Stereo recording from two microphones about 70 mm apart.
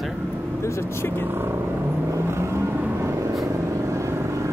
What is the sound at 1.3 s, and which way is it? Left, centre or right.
Speech, right.